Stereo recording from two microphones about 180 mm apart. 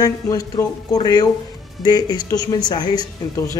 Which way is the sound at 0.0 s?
20° left (ahead or behind).